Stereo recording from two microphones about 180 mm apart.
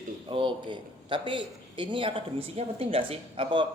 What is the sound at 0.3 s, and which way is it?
A man's voice, 25° right (ahead or behind).